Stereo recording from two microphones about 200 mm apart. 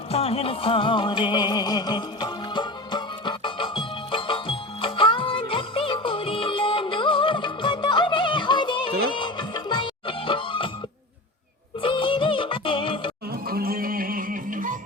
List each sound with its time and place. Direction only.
0.1 s music: 30° left (ahead or behind)
11.8 s music: 25° left (ahead or behind)
13.3 s music: 50° right (ahead or behind)